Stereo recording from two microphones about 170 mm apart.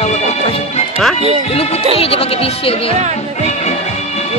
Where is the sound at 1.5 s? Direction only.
35° left (ahead or behind).